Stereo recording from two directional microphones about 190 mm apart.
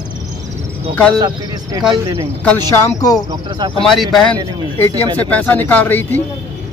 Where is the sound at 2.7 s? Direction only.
15° left (ahead or behind).